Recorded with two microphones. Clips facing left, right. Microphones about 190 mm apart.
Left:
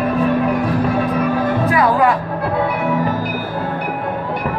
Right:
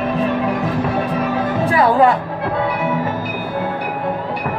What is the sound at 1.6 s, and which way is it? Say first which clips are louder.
Music: right 3 dB; 30° right (ahead or behind).